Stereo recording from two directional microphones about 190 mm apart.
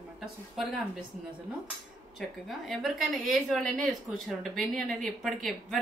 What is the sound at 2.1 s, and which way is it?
A woman's voice, centre (ahead or behind).